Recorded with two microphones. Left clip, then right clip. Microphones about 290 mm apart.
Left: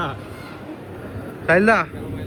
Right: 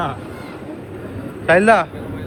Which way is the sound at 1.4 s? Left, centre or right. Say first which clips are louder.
Right 3 dB; centre.